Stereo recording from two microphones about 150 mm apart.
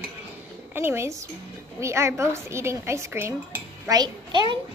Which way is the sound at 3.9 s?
30° right (ahead or behind).